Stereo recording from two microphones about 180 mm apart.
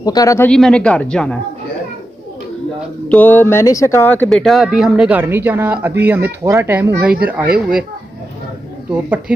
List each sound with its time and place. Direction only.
0.0 s speech: 20° left (ahead or behind)
0.5 s speech: 5° left (ahead or behind)
3.1 s speech: 10° left (ahead or behind); by 7.8 s 5° right (ahead or behind)